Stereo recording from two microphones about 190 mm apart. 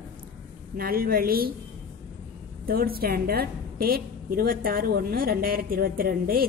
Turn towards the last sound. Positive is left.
turn(degrees=-50)  # may be behind; listen again after turning